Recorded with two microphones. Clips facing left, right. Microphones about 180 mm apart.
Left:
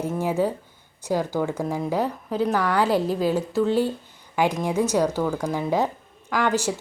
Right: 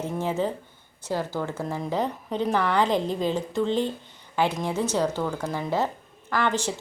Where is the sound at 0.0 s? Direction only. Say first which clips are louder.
Left 3 dB; 10° left (ahead or behind).